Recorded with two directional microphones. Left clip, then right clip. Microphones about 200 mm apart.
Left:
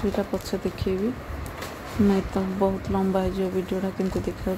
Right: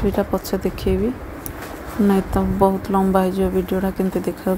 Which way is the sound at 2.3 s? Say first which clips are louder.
Right 7 dB; 15° right (ahead or behind).